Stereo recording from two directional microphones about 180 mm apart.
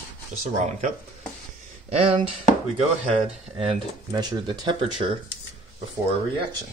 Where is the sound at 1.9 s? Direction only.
30° right (ahead or behind).